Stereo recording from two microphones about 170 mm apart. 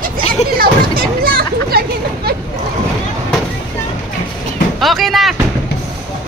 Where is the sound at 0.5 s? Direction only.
60° right (ahead or behind).